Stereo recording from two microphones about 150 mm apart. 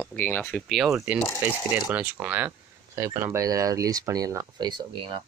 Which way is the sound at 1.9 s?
10° right (ahead or behind).